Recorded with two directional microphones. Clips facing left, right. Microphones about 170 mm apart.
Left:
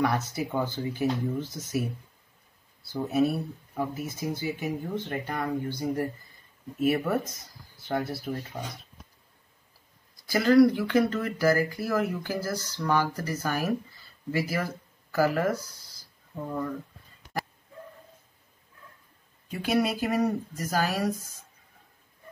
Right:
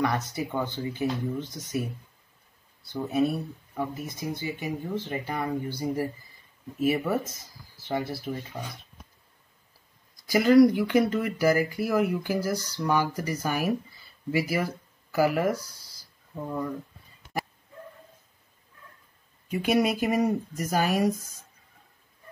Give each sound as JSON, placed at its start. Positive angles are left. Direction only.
{"t": 0.0, "sound": "speech", "side_deg": 5}
{"t": 2.9, "sound": "speech", "side_deg": 5}
{"t": 10.2, "sound": "speech", "side_deg": -15}
{"t": 19.5, "sound": "speech", "side_deg": -15}